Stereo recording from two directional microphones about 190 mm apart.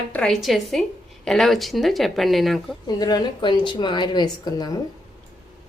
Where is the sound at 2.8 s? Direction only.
20° left (ahead or behind).